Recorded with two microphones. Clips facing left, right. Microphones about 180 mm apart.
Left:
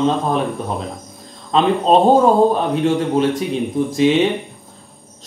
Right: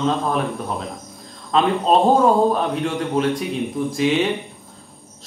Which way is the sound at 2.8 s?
30° left (ahead or behind).